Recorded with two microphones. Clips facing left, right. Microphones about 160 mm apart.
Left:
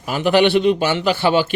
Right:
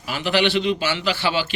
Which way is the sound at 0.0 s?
50° left (ahead or behind).